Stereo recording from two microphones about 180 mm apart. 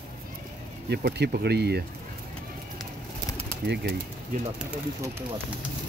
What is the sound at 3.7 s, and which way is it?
Speech, 65° right (ahead or behind).